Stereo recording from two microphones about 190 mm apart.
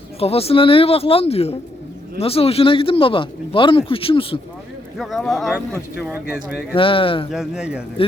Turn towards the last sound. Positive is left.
turn(degrees=-5)  # may be behind; listen again after turning